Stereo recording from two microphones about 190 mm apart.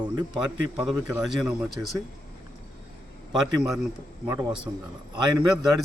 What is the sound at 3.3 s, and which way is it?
Speech, 5° right (ahead or behind).